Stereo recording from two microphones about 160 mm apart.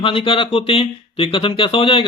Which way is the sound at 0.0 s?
35° left (ahead or behind).